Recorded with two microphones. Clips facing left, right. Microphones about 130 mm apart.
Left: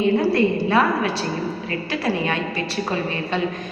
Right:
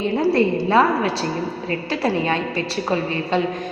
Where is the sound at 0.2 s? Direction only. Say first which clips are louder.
Right 1 dB; 25° right (ahead or behind).